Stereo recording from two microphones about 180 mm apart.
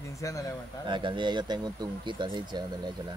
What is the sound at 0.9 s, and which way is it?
Speech, 25° right (ahead or behind).